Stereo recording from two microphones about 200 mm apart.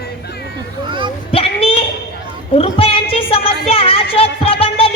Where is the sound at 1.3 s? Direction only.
30° left (ahead or behind).